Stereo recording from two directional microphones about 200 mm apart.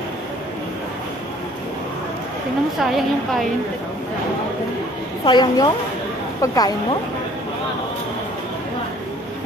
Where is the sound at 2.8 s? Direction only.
Centre (ahead or behind).